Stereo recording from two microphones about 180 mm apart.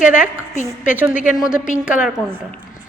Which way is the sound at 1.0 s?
10° right (ahead or behind).